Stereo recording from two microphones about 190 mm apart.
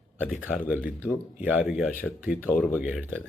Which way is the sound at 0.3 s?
5° right (ahead or behind).